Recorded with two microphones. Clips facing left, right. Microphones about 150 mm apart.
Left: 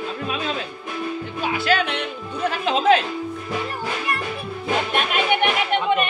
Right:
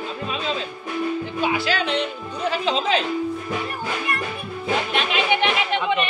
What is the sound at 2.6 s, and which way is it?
Music, 55° left (ahead or behind).